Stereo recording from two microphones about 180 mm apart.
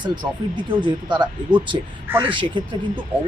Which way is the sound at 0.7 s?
25° right (ahead or behind).